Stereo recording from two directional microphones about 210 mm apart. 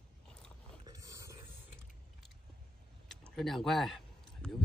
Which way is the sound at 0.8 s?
15° right (ahead or behind).